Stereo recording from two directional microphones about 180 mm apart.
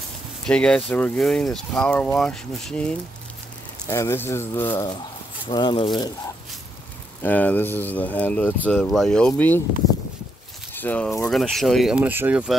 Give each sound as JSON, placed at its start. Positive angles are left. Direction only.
{"t": 0.5, "sound": "speech", "side_deg": 5}
{"t": 5.5, "sound": "speech", "side_deg": 25}
{"t": 7.2, "sound": "speech", "side_deg": 10}
{"t": 10.7, "sound": "a sound", "side_deg": 10}
{"t": 11.2, "sound": "speech", "side_deg": 0}